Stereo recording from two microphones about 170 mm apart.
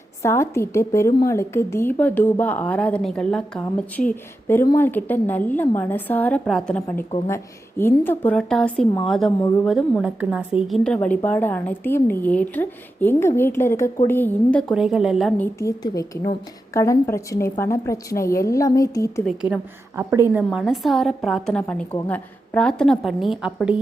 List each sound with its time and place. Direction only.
0.2 s a woman's voice: 15° left (ahead or behind)
7.3 s a woman's voice: 15° left (ahead or behind)
14.7 s a woman's voice: 5° right (ahead or behind)
15.4 s a woman's voice: 15° left (ahead or behind)
19.2 s a woman's voice: 5° right (ahead or behind)
20.0 s a woman's voice: 15° right (ahead or behind)
20.5 s a woman's voice: 5° right (ahead or behind)